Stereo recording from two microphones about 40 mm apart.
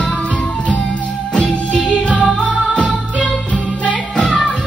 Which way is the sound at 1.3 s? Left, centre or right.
Left.